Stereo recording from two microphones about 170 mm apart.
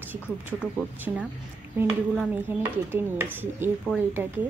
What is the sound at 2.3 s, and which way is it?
Speech, 10° right (ahead or behind).